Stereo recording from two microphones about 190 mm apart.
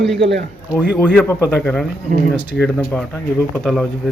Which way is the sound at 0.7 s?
10° right (ahead or behind).